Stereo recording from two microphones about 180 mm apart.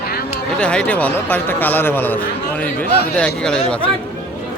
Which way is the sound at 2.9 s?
60° left (ahead or behind).